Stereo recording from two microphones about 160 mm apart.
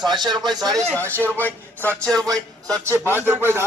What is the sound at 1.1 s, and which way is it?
A man's voice, 10° left (ahead or behind).